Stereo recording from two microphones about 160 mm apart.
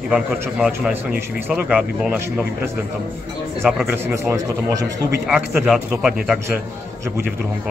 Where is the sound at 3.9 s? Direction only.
15° right (ahead or behind).